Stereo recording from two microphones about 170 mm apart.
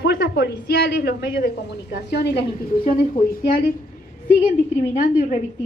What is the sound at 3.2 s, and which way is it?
Speech, 60° left (ahead or behind).